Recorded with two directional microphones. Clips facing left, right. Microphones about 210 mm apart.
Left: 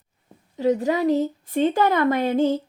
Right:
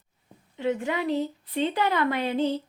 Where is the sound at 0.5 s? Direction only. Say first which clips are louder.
Left 6 dB; 40° left (ahead or behind).